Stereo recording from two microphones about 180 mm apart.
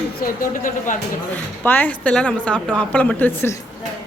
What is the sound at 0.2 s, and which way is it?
Speech, 45° left (ahead or behind).